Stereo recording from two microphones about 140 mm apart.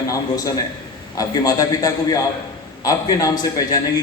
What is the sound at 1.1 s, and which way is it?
A man's voice, 25° left (ahead or behind).